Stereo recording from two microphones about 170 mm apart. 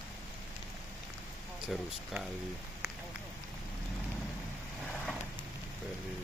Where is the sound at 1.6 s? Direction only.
5° right (ahead or behind).